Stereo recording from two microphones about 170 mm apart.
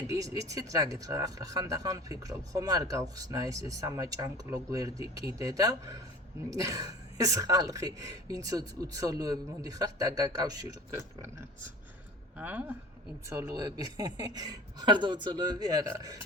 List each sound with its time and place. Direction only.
0.1 s speech: 20° right (ahead or behind)